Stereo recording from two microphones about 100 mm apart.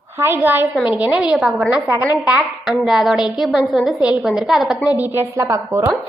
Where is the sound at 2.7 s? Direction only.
Centre (ahead or behind).